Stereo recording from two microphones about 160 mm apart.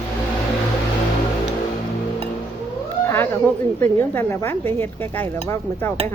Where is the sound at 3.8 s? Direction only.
15° left (ahead or behind).